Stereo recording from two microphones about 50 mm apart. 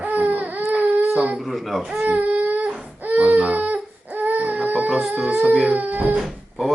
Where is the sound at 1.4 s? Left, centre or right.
Centre.